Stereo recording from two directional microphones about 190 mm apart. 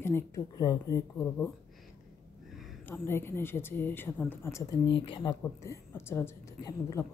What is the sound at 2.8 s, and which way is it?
Speech, 10° left (ahead or behind).